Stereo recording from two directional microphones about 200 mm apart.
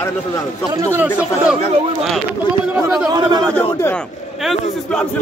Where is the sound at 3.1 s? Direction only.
20° right (ahead or behind).